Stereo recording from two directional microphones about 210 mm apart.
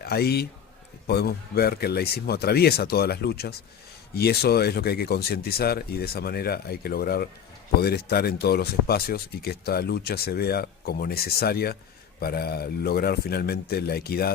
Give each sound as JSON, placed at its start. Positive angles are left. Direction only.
{"t": 0.0, "sound": "a man's voice", "side_deg": 50}